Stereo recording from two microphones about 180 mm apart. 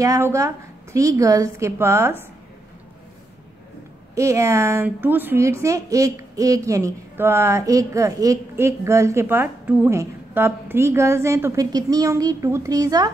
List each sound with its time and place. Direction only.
0.0 s a woman's voice: 15° right (ahead or behind)
4.1 s a woman's voice: 15° right (ahead or behind)